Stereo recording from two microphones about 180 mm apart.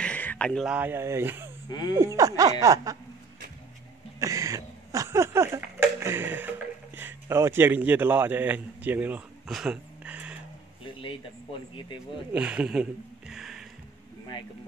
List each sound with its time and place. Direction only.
0.0 s a sound: 10° left (ahead or behind)
0.7 s speech: 10° right (ahead or behind)
1.7 s speech: 25° left (ahead or behind)
2.0 s speech: 15° right (ahead or behind)
2.6 s snicker: 20° right (ahead or behind)
4.2 s a sound: 15° right (ahead or behind)
7.0 s a man's voice: 10° right (ahead or behind)
12.3 s speech: 5° right (ahead or behind)
13.3 s music: centre (ahead or behind)